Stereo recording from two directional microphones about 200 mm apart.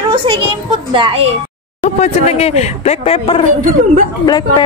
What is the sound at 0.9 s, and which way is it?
Speech, 25° right (ahead or behind).